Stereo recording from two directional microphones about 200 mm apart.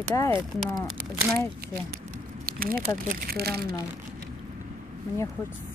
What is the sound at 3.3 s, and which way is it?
Speech, 50° right (ahead or behind).